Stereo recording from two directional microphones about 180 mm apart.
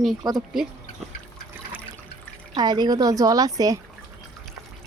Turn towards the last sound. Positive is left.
turn(degrees=-20)  # may be behind; listen again after turning